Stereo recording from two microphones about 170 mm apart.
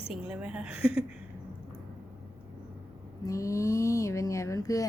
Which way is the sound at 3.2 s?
20° left (ahead or behind).